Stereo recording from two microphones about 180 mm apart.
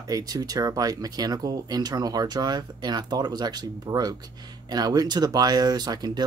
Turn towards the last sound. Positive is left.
turn(degrees=-20)  # may be behind; listen again after turning